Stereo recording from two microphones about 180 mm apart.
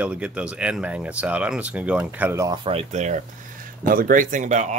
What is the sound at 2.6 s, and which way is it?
Speech, 35° right (ahead or behind).